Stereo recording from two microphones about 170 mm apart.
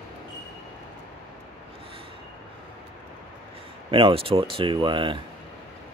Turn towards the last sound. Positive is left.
turn(degrees=-30)  # may be behind; listen again after turning